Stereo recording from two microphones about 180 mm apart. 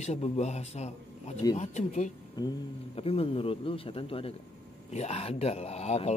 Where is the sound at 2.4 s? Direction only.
20° left (ahead or behind).